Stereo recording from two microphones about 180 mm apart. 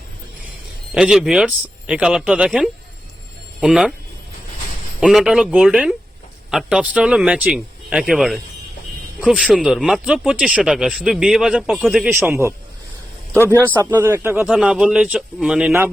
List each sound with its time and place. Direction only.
0.9 s speech: 5° right (ahead or behind)
4.9 s speech: 5° right (ahead or behind)
13.6 s speech: 10° left (ahead or behind)
13.9 s speech: 15° right (ahead or behind)